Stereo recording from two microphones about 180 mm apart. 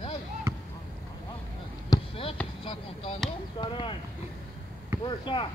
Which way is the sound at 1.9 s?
30° left (ahead or behind).